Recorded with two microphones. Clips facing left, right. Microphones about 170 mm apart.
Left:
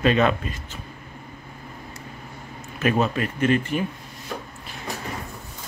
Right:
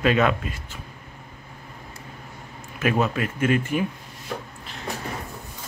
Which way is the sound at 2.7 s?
10° right (ahead or behind).